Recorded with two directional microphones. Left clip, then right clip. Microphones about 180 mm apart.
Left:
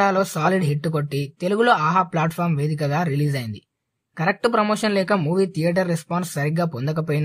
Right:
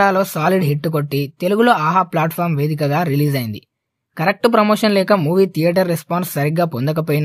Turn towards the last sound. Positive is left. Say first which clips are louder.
# right 6 dB
turn(degrees=-35)  # may be behind; listen again after turning